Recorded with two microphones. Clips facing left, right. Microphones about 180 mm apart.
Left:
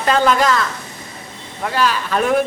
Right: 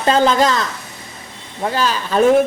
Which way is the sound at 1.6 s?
30° right (ahead or behind).